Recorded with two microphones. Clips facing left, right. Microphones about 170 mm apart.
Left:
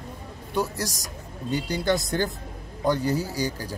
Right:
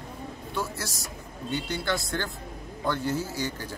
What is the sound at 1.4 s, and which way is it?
Speech, 35° left (ahead or behind).